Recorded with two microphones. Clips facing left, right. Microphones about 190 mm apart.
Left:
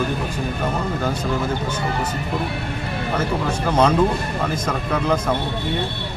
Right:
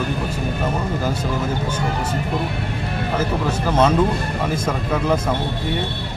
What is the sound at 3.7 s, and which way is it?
Speech, 5° right (ahead or behind).